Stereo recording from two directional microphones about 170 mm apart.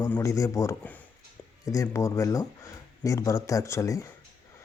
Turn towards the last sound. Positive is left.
turn(degrees=20)  # may be behind; listen again after turning